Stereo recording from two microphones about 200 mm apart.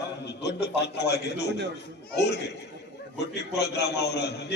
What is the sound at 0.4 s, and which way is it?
A man's voice, 55° left (ahead or behind).